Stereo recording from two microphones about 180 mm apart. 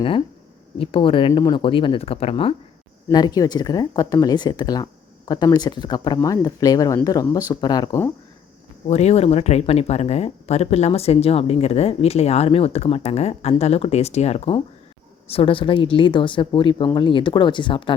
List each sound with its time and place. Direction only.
0.8 s speech: 30° left (ahead or behind)
8.9 s speech: 40° left (ahead or behind)